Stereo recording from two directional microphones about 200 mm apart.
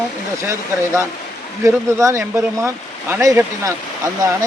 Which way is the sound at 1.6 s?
15° right (ahead or behind).